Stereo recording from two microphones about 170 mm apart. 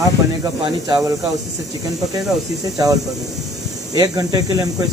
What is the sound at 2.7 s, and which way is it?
Speech, 20° right (ahead or behind).